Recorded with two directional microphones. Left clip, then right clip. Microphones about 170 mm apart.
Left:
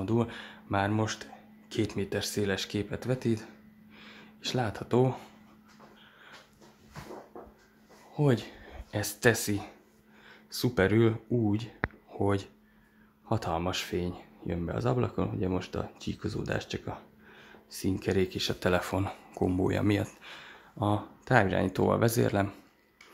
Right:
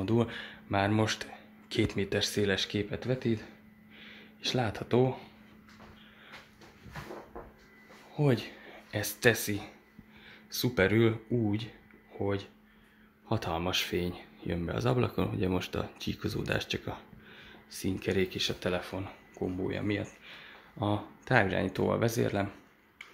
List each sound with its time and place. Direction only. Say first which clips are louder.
0.0 s speech: even; centre (ahead or behind)
4.0 s a sound: right 2 dB; 15° left (ahead or behind)
4.5 s speech: even; centre (ahead or behind)
5.0 s speech: left 1 dB; 25° left (ahead or behind)
8.1 s speech: left 1 dB; 10° left (ahead or behind)
12.1 s speech: left 2 dB; 30° left (ahead or behind)
13.3 s speech: left 1 dB; 10° left (ahead or behind)
17.6 s speech: left 2 dB; 20° left (ahead or behind)
18.7 s speech: left 5 dB; 40° left (ahead or behind)
20.8 s speech: left 2 dB; 15° left (ahead or behind)